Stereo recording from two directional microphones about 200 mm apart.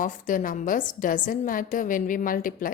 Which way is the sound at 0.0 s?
40° left (ahead or behind).